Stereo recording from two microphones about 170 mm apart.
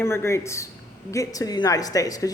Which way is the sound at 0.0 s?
15° left (ahead or behind).